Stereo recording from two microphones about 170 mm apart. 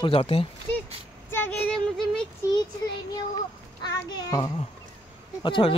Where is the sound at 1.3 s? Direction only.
10° left (ahead or behind).